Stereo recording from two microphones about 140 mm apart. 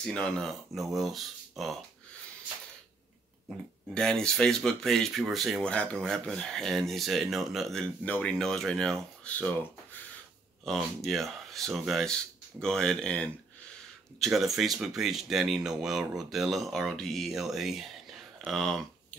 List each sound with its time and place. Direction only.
0.0 s speech: 5° left (ahead or behind)
3.9 s speech: 5° left (ahead or behind)
10.6 s speech: centre (ahead or behind)